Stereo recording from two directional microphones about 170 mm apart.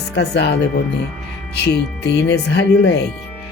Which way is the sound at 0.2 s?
75° left (ahead or behind).